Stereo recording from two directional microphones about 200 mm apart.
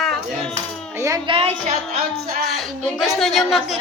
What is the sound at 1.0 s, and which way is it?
Music, 15° right (ahead or behind).